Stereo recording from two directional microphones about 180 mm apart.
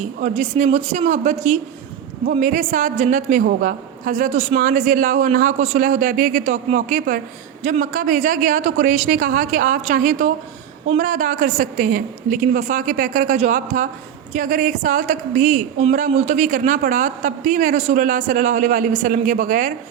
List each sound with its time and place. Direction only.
0.0 s a man's voice: 40° right (ahead or behind)
4.5 s a man's voice: 50° right (ahead or behind)